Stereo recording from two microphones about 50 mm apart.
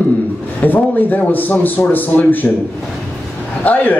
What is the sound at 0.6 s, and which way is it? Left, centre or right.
A man's voice, left.